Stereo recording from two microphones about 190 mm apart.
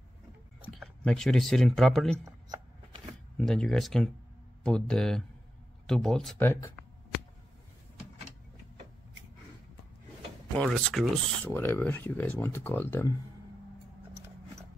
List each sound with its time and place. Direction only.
0.7 s speech: centre (ahead or behind)
2.2 s a sound: 20° right (ahead or behind)
3.3 s speech: 5° left (ahead or behind)
10.6 s speech: 5° left (ahead or behind)